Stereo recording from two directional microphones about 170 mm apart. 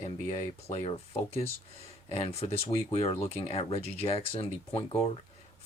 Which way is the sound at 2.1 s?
40° left (ahead or behind).